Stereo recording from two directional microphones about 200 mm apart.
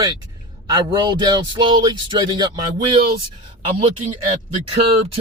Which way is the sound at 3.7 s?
30° right (ahead or behind).